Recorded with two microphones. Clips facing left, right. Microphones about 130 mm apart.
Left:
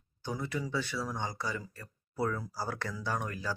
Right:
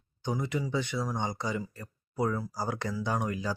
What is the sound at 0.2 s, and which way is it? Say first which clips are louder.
Speech: right 4 dB; 20° right (ahead or behind).